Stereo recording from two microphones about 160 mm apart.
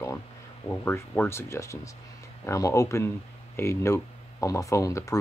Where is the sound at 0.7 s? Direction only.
15° left (ahead or behind).